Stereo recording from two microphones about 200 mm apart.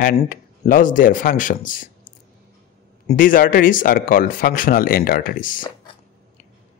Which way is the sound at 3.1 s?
45° left (ahead or behind).